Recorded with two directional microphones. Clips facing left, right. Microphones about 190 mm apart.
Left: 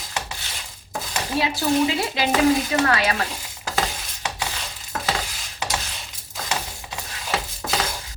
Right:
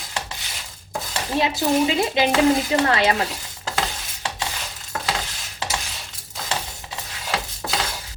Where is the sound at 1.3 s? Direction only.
20° right (ahead or behind).